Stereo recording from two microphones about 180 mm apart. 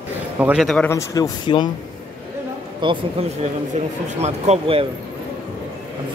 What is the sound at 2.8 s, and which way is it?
Speech, 25° right (ahead or behind).